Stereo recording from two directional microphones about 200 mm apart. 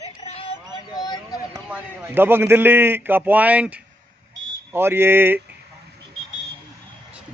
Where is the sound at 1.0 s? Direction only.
20° left (ahead or behind).